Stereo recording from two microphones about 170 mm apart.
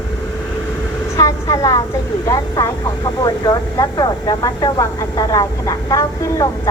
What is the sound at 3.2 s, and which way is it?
Speech, 25° left (ahead or behind).